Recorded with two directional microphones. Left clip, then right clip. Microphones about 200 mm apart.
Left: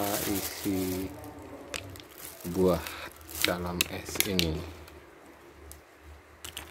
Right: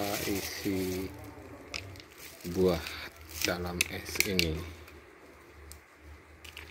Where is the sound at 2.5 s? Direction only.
15° left (ahead or behind).